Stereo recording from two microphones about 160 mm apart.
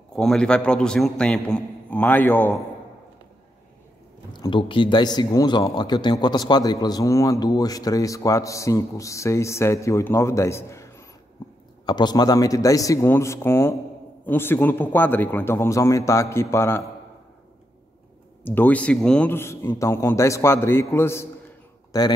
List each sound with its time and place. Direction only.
0.1 s a man's voice: 5° left (ahead or behind)
4.3 s a man's voice: 30° left (ahead or behind)
18.4 s a man's voice: 10° left (ahead or behind)